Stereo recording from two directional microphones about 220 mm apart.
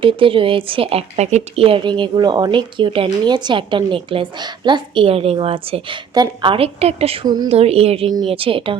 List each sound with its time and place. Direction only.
0.0 s speech: 25° right (ahead or behind)